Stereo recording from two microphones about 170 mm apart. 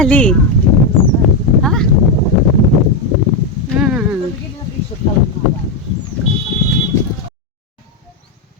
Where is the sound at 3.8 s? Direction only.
5° right (ahead or behind).